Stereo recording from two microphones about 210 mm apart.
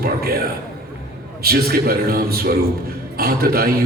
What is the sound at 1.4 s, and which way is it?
A man's voice, 45° right (ahead or behind).